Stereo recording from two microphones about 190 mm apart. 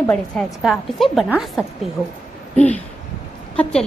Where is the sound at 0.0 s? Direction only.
5° left (ahead or behind).